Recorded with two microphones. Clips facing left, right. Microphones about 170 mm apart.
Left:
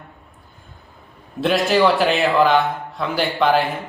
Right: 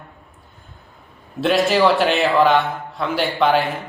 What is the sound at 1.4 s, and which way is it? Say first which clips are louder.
A man's voice: even; centre (ahead or behind).